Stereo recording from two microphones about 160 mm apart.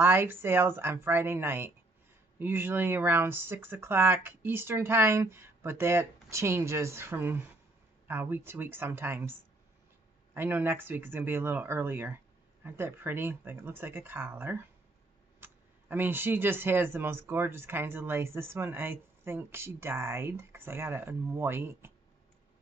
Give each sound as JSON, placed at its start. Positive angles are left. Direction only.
{"t": 0.0, "sound": "speech", "side_deg": -15}